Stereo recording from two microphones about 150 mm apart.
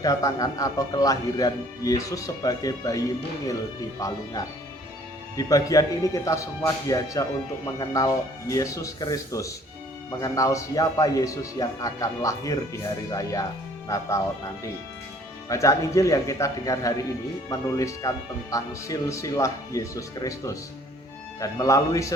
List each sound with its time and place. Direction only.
0.0 s speech: 25° left (ahead or behind)
4.0 s speech: 20° left (ahead or behind)
5.4 s speech: 25° left (ahead or behind)
15.4 s speech: 20° left (ahead or behind)